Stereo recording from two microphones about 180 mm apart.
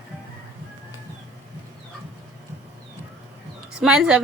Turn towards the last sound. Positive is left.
turn(degrees=-5)  # may be behind; listen again after turning